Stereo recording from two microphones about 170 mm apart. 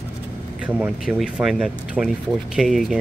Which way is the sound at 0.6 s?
10° right (ahead or behind).